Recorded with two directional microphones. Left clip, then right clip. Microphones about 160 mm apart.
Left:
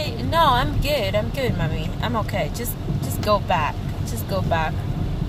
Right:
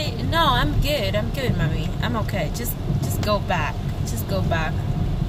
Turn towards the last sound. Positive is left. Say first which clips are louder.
# left 2 dB
turn(degrees=-25)  # may be behind; listen again after turning